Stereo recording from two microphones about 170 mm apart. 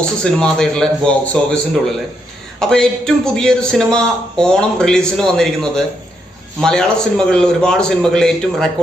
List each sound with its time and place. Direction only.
0.2 s a man's voice: 5° left (ahead or behind)